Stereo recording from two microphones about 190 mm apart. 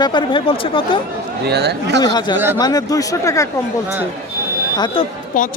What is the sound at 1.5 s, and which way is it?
Speech, 60° right (ahead or behind).